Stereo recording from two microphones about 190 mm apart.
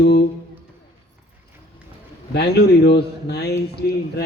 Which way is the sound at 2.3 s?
60° left (ahead or behind).